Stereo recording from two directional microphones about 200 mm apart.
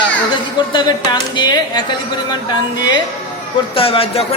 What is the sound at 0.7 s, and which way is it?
A man's voice, 20° left (ahead or behind).